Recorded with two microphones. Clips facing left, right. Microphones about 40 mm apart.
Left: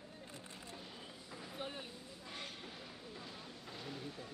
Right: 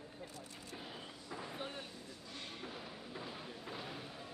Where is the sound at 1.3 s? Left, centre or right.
Centre.